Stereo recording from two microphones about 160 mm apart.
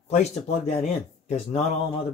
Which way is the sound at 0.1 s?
40° left (ahead or behind).